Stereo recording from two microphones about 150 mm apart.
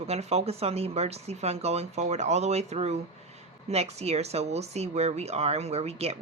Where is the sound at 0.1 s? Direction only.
45° right (ahead or behind).